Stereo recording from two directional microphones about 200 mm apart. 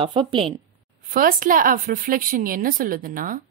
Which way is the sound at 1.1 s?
45° right (ahead or behind).